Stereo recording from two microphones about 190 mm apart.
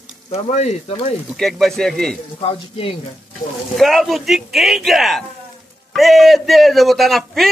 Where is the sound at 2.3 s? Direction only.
30° left (ahead or behind).